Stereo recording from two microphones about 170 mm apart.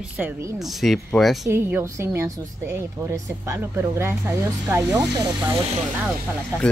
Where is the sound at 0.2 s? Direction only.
15° right (ahead or behind).